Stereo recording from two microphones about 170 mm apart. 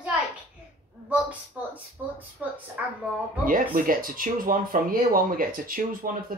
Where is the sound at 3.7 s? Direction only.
55° right (ahead or behind).